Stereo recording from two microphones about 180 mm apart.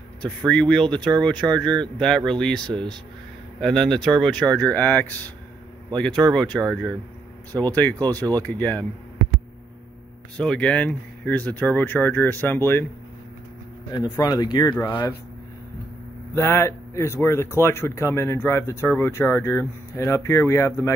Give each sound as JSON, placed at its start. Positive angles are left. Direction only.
{"t": 0.2, "sound": "speech", "side_deg": 5}
{"t": 8.1, "sound": "speech", "side_deg": -20}
{"t": 8.4, "sound": "speech", "side_deg": 10}
{"t": 10.3, "sound": "speech", "side_deg": 5}
{"t": 13.9, "sound": "speech", "side_deg": 25}
{"t": 16.3, "sound": "speech", "side_deg": 15}